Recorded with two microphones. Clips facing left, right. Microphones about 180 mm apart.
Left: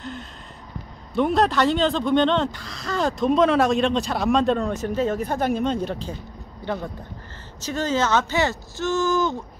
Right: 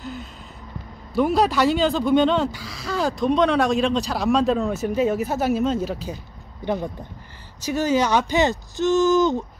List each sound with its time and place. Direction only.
0.0 s gasp: 5° right (ahead or behind)
1.1 s speech: 5° right (ahead or behind)
6.6 s speech: 15° right (ahead or behind)